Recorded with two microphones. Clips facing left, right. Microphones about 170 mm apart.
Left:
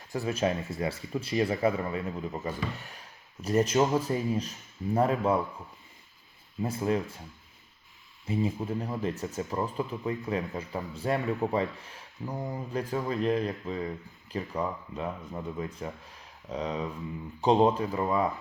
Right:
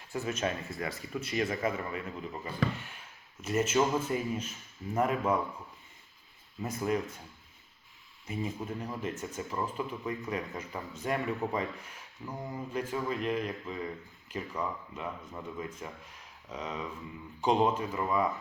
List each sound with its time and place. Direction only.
0.1 s speech: 35° left (ahead or behind)
6.6 s speech: 30° left (ahead or behind)
8.3 s speech: 30° left (ahead or behind)